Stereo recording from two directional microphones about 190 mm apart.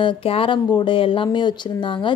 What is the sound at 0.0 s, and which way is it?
A woman's voice, 30° left (ahead or behind).